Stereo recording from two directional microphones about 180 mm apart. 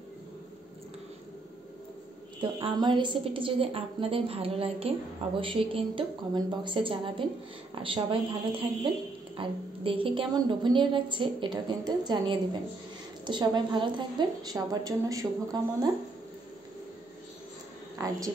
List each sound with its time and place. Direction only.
2.4 s a woman's voice: 25° right (ahead or behind)
17.9 s a woman's voice: 20° right (ahead or behind)